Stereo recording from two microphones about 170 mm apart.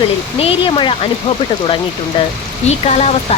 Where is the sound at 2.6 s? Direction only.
40° left (ahead or behind).